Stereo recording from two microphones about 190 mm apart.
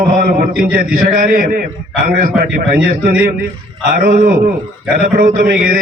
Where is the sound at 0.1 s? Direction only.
50° right (ahead or behind).